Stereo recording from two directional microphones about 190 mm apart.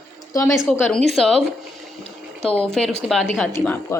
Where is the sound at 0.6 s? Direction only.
5° left (ahead or behind).